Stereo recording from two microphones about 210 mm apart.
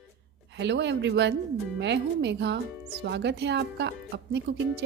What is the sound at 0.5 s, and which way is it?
Speech, 55° right (ahead or behind).